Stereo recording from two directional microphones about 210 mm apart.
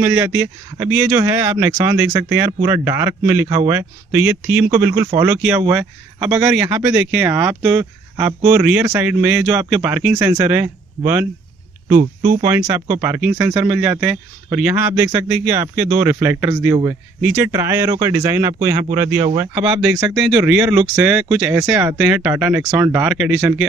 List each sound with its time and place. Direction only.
0.0 s speech: 5° right (ahead or behind)
11.9 s speech: 40° right (ahead or behind)
12.4 s speech: 10° right (ahead or behind)